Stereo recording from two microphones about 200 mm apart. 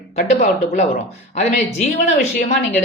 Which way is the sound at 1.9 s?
35° left (ahead or behind).